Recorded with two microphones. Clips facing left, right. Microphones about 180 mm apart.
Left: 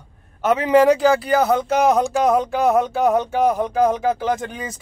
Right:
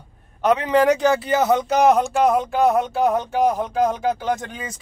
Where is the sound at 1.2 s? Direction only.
25° right (ahead or behind).